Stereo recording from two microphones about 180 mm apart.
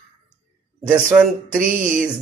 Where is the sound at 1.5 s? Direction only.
50° right (ahead or behind).